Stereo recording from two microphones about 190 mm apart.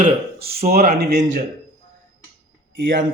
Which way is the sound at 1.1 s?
40° right (ahead or behind).